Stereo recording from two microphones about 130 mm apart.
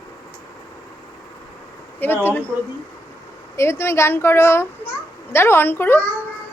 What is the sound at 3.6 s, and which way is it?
A woman's voice, 20° left (ahead or behind).